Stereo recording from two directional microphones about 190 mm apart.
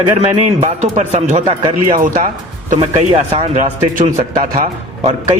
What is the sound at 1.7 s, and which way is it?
Speech, 45° right (ahead or behind).